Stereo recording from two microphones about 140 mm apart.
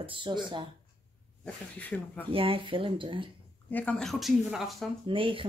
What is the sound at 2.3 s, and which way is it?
Speech, 40° right (ahead or behind).